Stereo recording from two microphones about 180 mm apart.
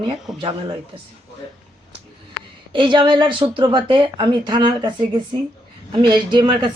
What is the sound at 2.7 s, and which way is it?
Speech, 25° right (ahead or behind).